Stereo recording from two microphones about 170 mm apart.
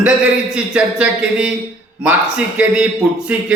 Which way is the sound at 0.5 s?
5° right (ahead or behind).